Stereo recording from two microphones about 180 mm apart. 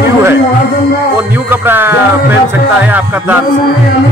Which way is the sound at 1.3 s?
10° right (ahead or behind).